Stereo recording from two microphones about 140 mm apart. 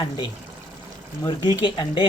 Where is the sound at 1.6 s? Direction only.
35° left (ahead or behind).